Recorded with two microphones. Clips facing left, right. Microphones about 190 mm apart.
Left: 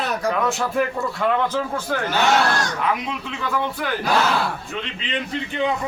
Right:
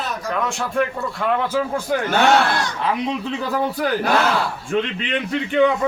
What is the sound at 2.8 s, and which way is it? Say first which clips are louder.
Speech: right 2 dB; 35° right (ahead or behind).